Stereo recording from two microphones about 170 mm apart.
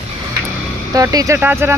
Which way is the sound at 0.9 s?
20° right (ahead or behind).